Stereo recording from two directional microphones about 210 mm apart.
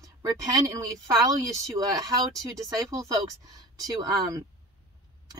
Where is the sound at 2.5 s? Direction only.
15° right (ahead or behind).